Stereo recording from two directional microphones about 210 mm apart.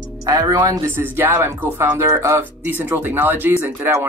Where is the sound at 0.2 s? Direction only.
15° right (ahead or behind).